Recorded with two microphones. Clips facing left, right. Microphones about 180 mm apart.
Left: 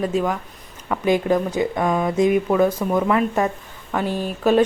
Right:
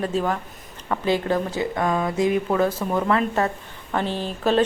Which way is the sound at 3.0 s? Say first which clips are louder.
Left 2 dB; 10° left (ahead or behind).